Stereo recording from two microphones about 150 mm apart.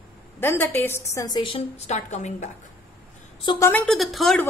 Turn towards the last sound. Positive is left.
turn(degrees=0)  # may be behind; listen again after turning